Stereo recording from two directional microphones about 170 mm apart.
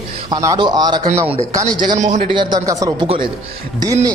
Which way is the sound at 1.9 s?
45° right (ahead or behind).